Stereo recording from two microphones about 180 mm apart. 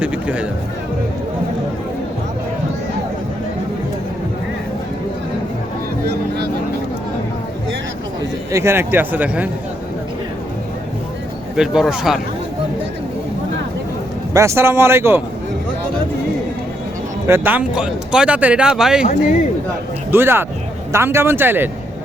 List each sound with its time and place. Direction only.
0.0 s speech: 5° right (ahead or behind)
6.1 s vehicle: 65° right (ahead or behind)
8.5 s speech: 15° right (ahead or behind)
11.5 s speech: 5° right (ahead or behind)
14.3 s speech: 15° right (ahead or behind)
17.2 s speech: 10° right (ahead or behind)
20.1 s speech: 10° right (ahead or behind)